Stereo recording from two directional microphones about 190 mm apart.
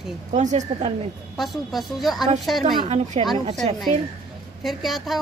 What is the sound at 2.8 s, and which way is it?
Speech, 35° right (ahead or behind).